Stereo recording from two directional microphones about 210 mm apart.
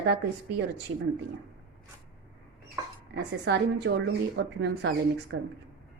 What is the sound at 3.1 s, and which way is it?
A woman's voice, 55° right (ahead or behind).